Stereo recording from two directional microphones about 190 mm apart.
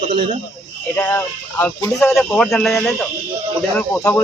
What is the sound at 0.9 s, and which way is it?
Speech, 10° left (ahead or behind).